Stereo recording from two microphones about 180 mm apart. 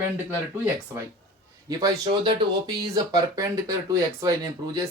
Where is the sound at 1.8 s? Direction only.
25° right (ahead or behind).